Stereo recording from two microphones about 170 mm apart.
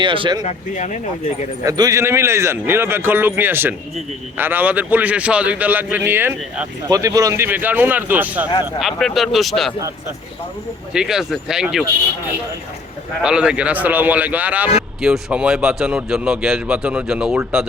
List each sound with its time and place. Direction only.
0.0 s speech: 30° right (ahead or behind)
0.4 s speech: 45° left (ahead or behind)
1.6 s a man's voice: 20° right (ahead or behind)
6.9 s a man's voice: 20° right (ahead or behind)
8.8 s speech: centre (ahead or behind)
10.9 s speech: 5° right (ahead or behind)
13.2 s a man's voice: 5° right (ahead or behind)